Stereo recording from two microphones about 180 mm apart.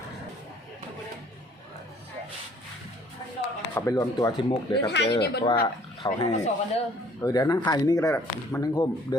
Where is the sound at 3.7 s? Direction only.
15° left (ahead or behind).